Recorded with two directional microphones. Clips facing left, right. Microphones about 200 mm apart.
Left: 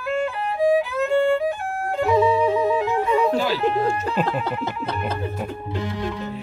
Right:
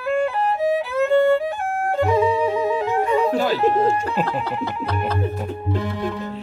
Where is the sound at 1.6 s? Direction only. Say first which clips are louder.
Right 3 dB; 50° right (ahead or behind).